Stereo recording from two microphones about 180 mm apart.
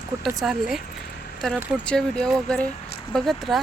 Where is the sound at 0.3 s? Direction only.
Centre (ahead or behind).